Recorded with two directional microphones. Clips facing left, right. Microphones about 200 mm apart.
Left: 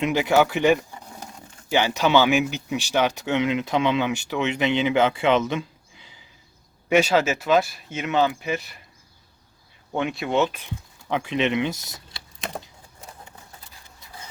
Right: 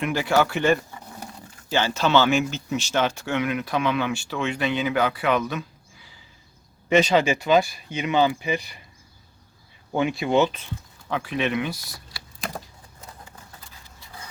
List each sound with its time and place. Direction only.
0.0 s speech: 20° left (ahead or behind)
6.8 s speech: 5° left (ahead or behind)
9.9 s speech: centre (ahead or behind)
11.1 s speech: 20° left (ahead or behind)